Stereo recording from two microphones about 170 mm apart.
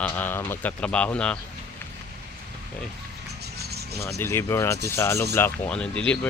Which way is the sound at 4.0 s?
15° left (ahead or behind).